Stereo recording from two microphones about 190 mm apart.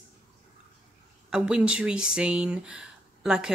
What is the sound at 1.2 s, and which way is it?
A woman's voice, 5° right (ahead or behind).